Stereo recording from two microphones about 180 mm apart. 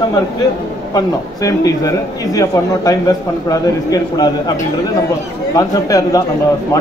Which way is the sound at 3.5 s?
20° left (ahead or behind).